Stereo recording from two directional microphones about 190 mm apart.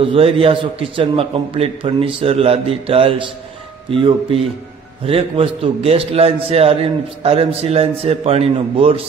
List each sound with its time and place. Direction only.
0.0 s a man's voice: 30° right (ahead or behind)